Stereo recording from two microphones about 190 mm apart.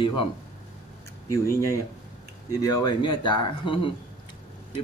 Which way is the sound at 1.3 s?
15° left (ahead or behind).